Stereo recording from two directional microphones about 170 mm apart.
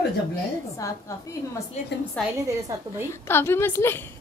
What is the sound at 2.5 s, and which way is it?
Speech, 20° right (ahead or behind).